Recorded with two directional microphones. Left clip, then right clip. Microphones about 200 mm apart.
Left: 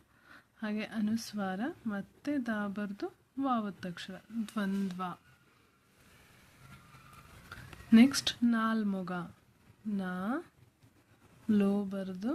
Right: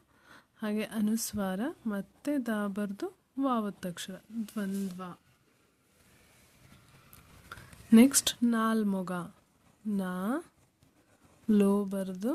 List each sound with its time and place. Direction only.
0.3 s speech: 35° right (ahead or behind)
4.4 s speech: 15° right (ahead or behind)
7.5 s speech: 35° right (ahead or behind)
11.4 s speech: 35° right (ahead or behind)